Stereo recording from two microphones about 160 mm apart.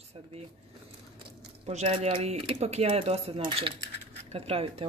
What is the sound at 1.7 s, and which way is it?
Speech, 45° right (ahead or behind).